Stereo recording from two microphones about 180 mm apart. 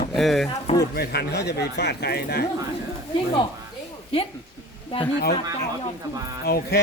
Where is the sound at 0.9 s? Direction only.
60° left (ahead or behind).